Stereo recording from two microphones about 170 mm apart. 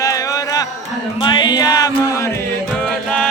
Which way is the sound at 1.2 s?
25° left (ahead or behind).